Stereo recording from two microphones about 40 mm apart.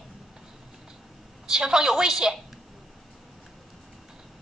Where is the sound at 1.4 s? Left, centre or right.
Centre.